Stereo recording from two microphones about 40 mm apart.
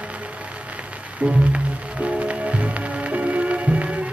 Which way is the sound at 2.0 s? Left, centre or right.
Right.